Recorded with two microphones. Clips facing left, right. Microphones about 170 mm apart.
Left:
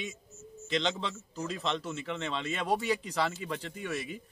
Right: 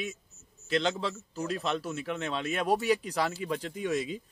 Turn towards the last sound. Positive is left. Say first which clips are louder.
# right 6 dB
turn(degrees=-15)  # may be behind; listen again after turning